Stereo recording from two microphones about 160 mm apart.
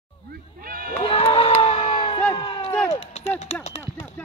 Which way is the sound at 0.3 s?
65° right (ahead or behind).